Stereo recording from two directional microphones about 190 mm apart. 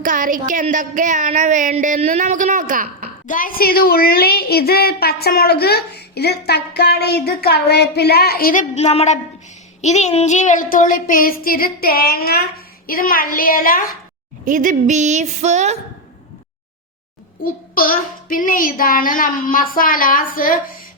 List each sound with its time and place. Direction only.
0.0 s a woman's voice: 45° right (ahead or behind)
3.2 s a woman's voice: 45° left (ahead or behind)
8.7 s a woman's voice: 35° left (ahead or behind)
14.4 s a woman's voice: 45° right (ahead or behind)
17.4 s a child's voice: 50° left (ahead or behind)